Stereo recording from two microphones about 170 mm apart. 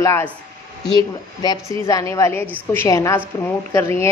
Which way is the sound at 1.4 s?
25° left (ahead or behind).